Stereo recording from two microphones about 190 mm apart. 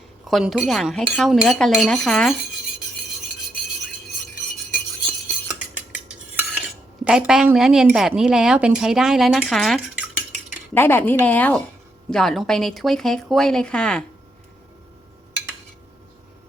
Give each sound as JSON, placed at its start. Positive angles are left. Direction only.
{"t": 0.3, "sound": "a woman's voice", "side_deg": 0}
{"t": 5.7, "sound": "cutlery", "side_deg": -5}
{"t": 7.0, "sound": "a woman's voice", "side_deg": -5}
{"t": 10.8, "sound": "a woman's voice", "side_deg": 10}